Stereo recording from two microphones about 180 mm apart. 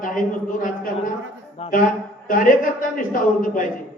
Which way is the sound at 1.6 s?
35° left (ahead or behind).